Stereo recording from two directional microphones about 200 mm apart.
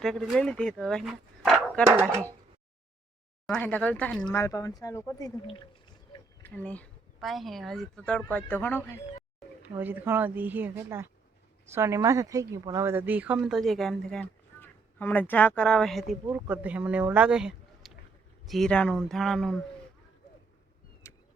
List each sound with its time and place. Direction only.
0.0 s speech: centre (ahead or behind)
3.4 s speech: 5° left (ahead or behind)
6.4 s speech: 10° left (ahead or behind)
9.6 s speech: 10° right (ahead or behind)
21.0 s vehicle: 15° left (ahead or behind)